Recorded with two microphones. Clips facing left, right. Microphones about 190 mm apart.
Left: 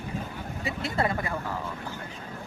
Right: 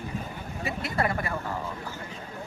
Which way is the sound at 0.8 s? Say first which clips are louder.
Left 1 dB; 25° left (ahead or behind).